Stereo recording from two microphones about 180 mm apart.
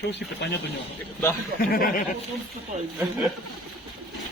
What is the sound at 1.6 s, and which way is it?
Speech, 50° left (ahead or behind).